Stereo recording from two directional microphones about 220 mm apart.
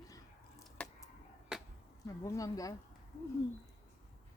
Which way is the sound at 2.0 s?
15° left (ahead or behind).